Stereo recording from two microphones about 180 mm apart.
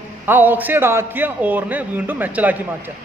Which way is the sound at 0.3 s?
10° right (ahead or behind).